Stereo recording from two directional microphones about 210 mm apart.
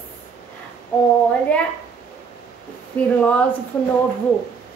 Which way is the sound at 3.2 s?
5° left (ahead or behind).